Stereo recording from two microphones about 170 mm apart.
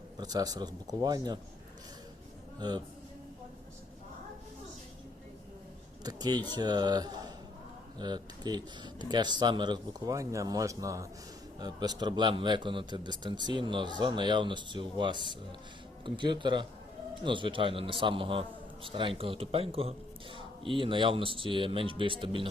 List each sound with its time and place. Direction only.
0.2 s speech: 20° right (ahead or behind)
2.6 s speech: 25° right (ahead or behind)
6.0 s a man's voice: 20° right (ahead or behind)